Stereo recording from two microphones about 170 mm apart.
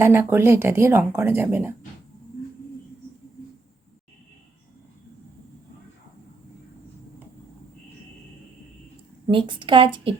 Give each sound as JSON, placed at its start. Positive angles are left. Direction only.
{"t": 0.0, "sound": "speech", "side_deg": -15}
{"t": 9.2, "sound": "a woman's voice", "side_deg": -30}